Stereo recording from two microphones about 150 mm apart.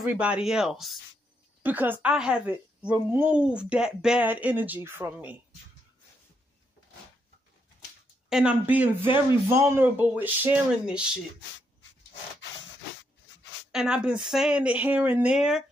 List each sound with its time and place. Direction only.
0.1 s a woman's voice: 10° right (ahead or behind)
8.3 s a woman's voice: 5° right (ahead or behind)
9.0 s speech: 30° left (ahead or behind)
9.5 s a woman's voice: 15° right (ahead or behind)
13.7 s speech: 5° right (ahead or behind)